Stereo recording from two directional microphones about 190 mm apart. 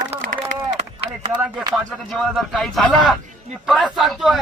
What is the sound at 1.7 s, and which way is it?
Speech, centre (ahead or behind).